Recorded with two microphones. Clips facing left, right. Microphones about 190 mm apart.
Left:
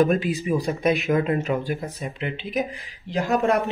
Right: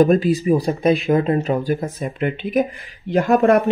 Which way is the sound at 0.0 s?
40° right (ahead or behind).